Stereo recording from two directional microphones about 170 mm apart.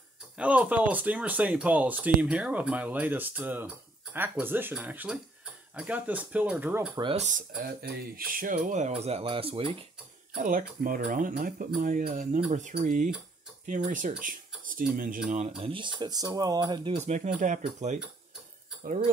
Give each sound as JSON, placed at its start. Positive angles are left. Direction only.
{"t": 0.4, "sound": "speech", "side_deg": -10}
{"t": 7.0, "sound": "speech", "side_deg": -30}
{"t": 7.2, "sound": "speech", "side_deg": -55}
{"t": 10.3, "sound": "speech", "side_deg": -50}
{"t": 15.2, "sound": "speech", "side_deg": -40}
{"t": 15.6, "sound": "speech", "side_deg": -30}